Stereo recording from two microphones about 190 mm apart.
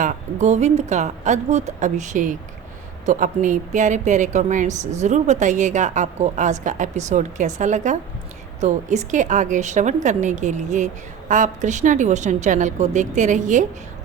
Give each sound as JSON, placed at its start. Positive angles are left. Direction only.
{"t": 0.0, "sound": "a woman's voice", "side_deg": -40}